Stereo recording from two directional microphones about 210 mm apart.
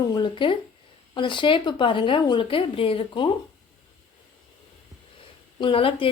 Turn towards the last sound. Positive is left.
turn(degrees=25)  # may be behind; listen again after turning